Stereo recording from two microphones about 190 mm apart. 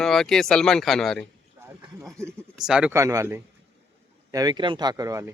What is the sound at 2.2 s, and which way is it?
Speech, 15° right (ahead or behind).